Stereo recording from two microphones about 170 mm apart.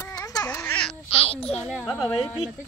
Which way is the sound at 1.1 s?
35° left (ahead or behind).